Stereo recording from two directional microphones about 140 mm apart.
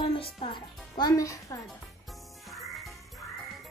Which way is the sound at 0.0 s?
40° left (ahead or behind).